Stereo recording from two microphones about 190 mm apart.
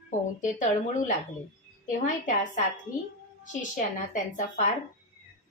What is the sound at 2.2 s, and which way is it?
Speech, 40° left (ahead or behind).